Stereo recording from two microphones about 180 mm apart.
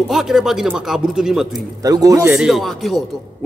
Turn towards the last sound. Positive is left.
turn(degrees=0)  # may be behind; listen again after turning